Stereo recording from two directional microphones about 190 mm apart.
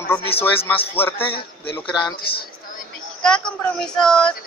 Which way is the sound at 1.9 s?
20° left (ahead or behind).